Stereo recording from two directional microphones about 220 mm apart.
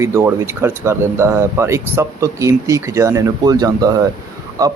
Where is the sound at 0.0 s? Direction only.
10° right (ahead or behind).